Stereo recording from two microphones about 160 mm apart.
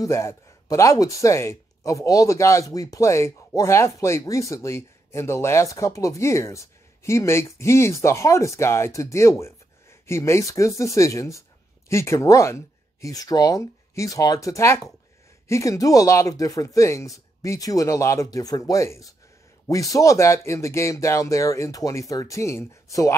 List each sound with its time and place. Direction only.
0.0 s speech: 20° left (ahead or behind)